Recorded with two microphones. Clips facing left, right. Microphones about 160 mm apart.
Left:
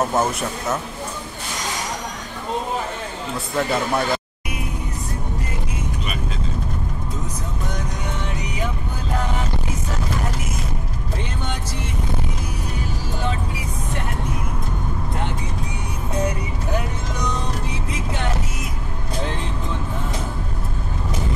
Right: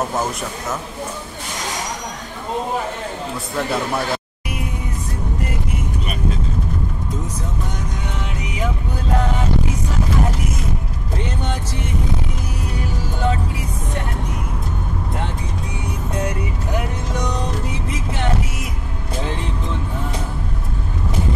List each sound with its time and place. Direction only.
3.5 s speech: centre (ahead or behind)